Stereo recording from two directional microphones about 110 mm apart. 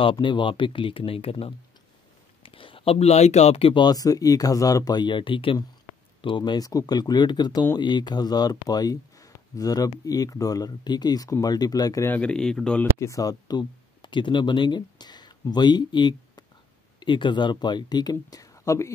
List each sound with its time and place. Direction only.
0.0 s speech: 50° left (ahead or behind)
3.8 s speech: 35° left (ahead or behind)
12.1 s speech: 10° left (ahead or behind)
13.0 s speech: 30° left (ahead or behind)